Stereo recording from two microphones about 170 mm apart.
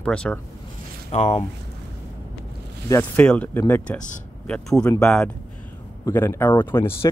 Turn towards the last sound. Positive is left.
turn(degrees=15)  # may be behind; listen again after turning